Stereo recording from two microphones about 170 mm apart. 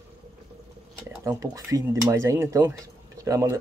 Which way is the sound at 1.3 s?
20° right (ahead or behind).